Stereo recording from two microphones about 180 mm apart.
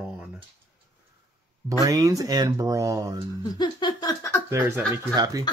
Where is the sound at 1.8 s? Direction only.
20° right (ahead or behind).